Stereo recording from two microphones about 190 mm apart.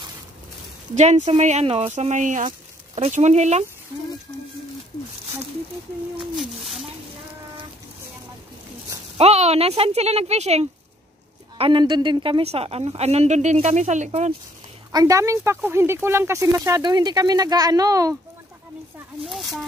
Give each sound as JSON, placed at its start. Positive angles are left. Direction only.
{"t": 0.9, "sound": "a woman's voice", "side_deg": -35}
{"t": 6.3, "sound": "speech", "side_deg": 0}
{"t": 9.2, "sound": "a woman's voice", "side_deg": -35}
{"t": 14.9, "sound": "speech", "side_deg": -20}
{"t": 19.2, "sound": "speech", "side_deg": 0}